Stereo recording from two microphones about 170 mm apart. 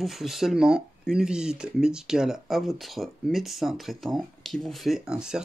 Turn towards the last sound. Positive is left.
turn(degrees=-5)  # may be behind; listen again after turning